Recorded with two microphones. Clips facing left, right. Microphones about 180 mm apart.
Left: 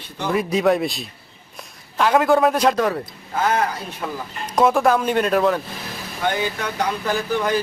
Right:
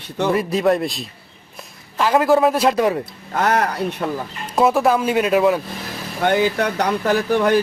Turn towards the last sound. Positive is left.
turn(degrees=-60)  # may be behind; listen again after turning